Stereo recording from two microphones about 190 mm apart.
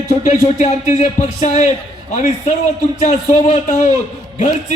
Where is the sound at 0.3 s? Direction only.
35° left (ahead or behind).